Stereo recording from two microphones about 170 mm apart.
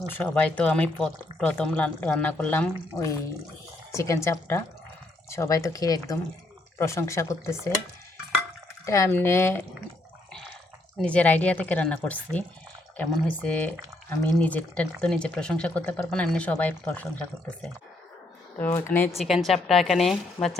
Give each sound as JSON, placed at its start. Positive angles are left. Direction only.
{"t": 0.1, "sound": "speech", "side_deg": 5}
{"t": 8.9, "sound": "speech", "side_deg": 15}
{"t": 10.9, "sound": "speech", "side_deg": 5}
{"t": 18.6, "sound": "speech", "side_deg": 15}
{"t": 19.2, "sound": "a woman's voice", "side_deg": 0}